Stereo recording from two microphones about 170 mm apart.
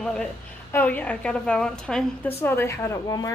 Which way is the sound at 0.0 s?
5° left (ahead or behind).